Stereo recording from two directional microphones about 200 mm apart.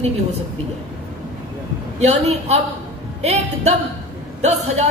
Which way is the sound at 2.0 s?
35° right (ahead or behind).